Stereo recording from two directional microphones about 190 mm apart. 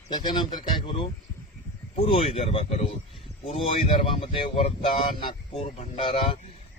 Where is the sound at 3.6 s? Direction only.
30° left (ahead or behind).